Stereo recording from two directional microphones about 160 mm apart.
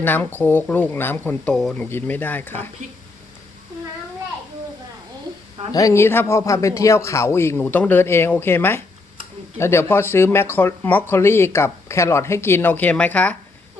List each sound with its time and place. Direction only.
0.0 s speech: 10° left (ahead or behind)
5.7 s speech: 20° left (ahead or behind)